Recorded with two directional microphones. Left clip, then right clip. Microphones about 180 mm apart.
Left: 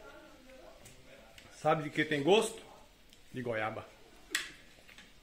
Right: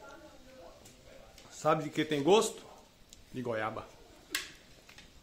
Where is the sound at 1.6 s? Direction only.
10° right (ahead or behind).